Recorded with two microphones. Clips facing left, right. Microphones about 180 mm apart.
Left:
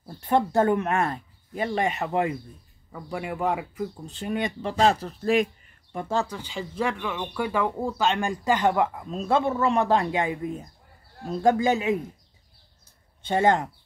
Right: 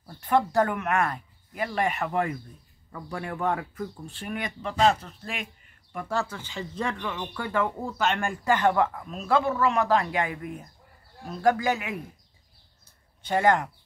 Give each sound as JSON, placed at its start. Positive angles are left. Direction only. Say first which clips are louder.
{"t": 0.0, "sound": "speech", "louder": "left 1 dB", "side_deg": 25}
{"t": 5.9, "sound": "speech", "louder": "left 3 dB", "side_deg": 20}
{"t": 13.2, "sound": "speech", "louder": "left 1 dB", "side_deg": 25}